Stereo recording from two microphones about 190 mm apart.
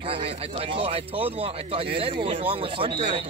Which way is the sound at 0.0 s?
30° right (ahead or behind).